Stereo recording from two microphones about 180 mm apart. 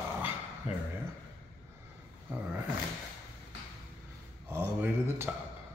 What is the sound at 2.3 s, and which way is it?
Speech, 10° right (ahead or behind).